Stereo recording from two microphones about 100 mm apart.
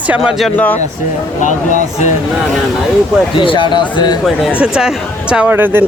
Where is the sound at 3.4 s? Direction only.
55° left (ahead or behind).